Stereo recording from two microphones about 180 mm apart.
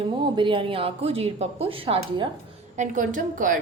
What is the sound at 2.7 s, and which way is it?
Speech, 45° right (ahead or behind).